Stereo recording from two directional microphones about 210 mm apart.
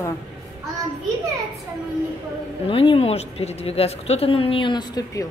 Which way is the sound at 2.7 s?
25° left (ahead or behind).